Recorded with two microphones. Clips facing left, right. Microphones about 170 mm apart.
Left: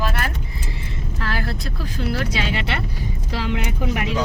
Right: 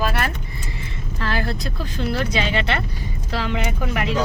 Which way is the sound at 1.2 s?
5° left (ahead or behind).